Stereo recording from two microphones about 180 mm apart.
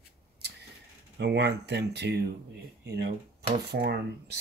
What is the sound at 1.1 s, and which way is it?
Speech, 70° right (ahead or behind).